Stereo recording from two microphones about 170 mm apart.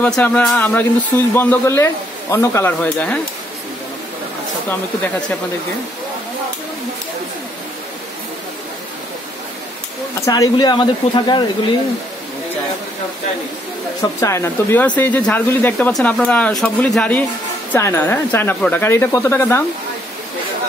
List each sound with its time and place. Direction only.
0.0 s speech: 5° left (ahead or behind)
10.2 s speech: 20° left (ahead or behind)
14.2 s speech: 15° left (ahead or behind)